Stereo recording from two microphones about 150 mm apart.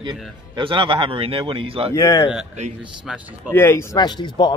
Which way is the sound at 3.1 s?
5° right (ahead or behind).